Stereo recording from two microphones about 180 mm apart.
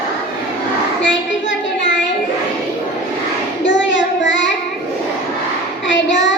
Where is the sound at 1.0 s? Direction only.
90° left.